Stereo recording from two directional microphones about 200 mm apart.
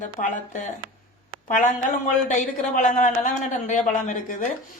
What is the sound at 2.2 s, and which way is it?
Speech, 40° left (ahead or behind).